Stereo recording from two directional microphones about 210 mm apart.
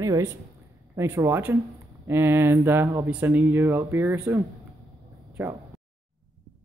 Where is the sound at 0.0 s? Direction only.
15° right (ahead or behind).